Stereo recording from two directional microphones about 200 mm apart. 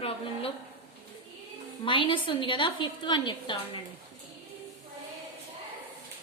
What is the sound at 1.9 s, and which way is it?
A woman's voice, 25° left (ahead or behind).